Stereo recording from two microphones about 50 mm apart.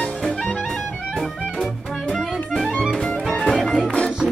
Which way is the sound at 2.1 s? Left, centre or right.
Centre.